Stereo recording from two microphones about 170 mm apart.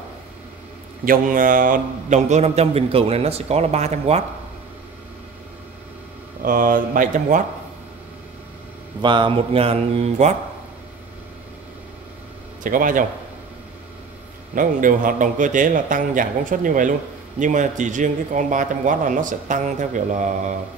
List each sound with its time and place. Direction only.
1.0 s a man's voice: 55° right (ahead or behind); by 4.2 s 40° right (ahead or behind)
6.4 s a man's voice: 55° right (ahead or behind)
9.0 s a man's voice: 30° right (ahead or behind)
12.6 s a man's voice: 50° right (ahead or behind)
14.5 s a man's voice: 55° right (ahead or behind)